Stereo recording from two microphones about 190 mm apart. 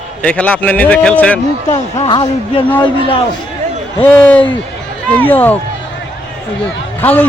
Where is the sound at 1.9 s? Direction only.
25° left (ahead or behind).